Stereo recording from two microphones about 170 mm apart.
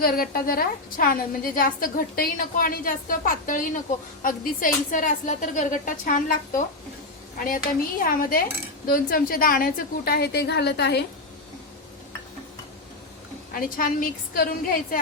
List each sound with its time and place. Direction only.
0.0 s a woman's voice: 60° left (ahead or behind)
13.5 s a woman's voice: 55° left (ahead or behind)